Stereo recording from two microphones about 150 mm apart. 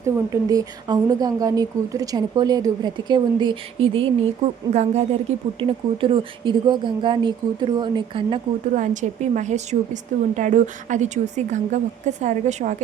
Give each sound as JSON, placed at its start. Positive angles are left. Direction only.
{"t": 0.0, "sound": "speech", "side_deg": -25}
{"t": 4.7, "sound": "a woman's voice", "side_deg": -50}
{"t": 5.5, "sound": "speech", "side_deg": -35}
{"t": 8.7, "sound": "a woman's voice", "side_deg": -55}